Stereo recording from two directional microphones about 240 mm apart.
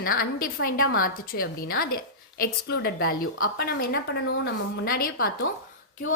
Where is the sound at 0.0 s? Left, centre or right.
Left.